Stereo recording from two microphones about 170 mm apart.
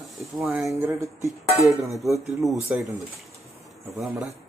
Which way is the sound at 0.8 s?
20° right (ahead or behind).